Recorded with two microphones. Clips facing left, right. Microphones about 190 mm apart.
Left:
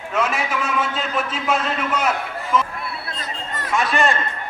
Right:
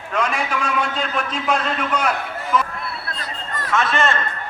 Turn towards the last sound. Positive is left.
turn(degrees=15)  # may be behind; listen again after turning